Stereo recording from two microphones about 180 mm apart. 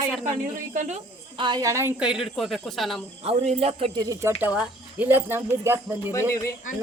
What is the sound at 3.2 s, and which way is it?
Speech, 35° right (ahead or behind).